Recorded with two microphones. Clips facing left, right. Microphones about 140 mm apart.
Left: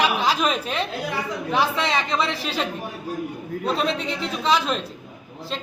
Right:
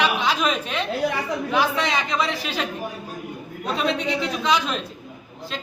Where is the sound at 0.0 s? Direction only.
35° left (ahead or behind).